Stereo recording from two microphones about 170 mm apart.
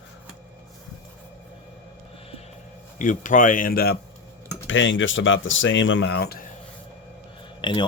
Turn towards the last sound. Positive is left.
turn(degrees=30)  # may be behind; listen again after turning